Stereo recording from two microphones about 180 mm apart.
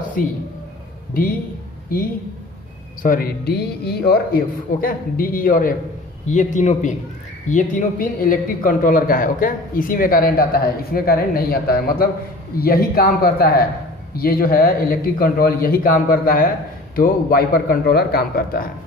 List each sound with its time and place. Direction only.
0.2 s speech: 50° left (ahead or behind)
3.0 s speech: 55° left (ahead or behind)